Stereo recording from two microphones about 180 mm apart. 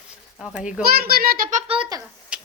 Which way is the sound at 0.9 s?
60° right (ahead or behind).